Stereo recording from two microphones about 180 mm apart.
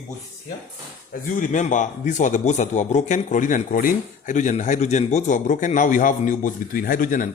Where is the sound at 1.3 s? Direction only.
45° left (ahead or behind).